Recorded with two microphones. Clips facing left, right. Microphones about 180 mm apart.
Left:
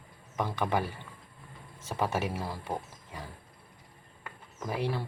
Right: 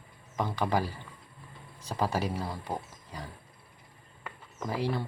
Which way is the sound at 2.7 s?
5° right (ahead or behind).